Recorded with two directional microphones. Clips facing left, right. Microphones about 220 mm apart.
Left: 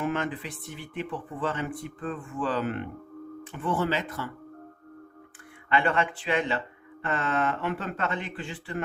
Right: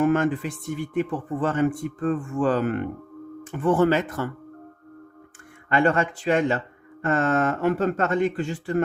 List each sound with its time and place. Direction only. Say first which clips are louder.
0.0 s a man's voice: right 9 dB; 50° right (ahead or behind)
5.6 s a man's voice: right 5 dB; 45° right (ahead or behind)